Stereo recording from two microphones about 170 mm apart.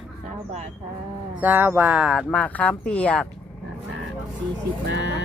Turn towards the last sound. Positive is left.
turn(degrees=-90)